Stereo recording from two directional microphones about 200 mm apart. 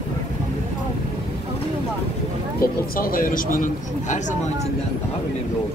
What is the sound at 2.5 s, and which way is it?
Speech, 45° left (ahead or behind).